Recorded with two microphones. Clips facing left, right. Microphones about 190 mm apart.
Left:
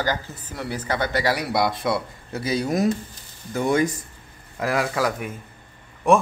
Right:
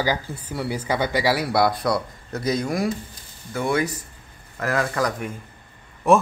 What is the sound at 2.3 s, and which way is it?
Speech, 30° left (ahead or behind).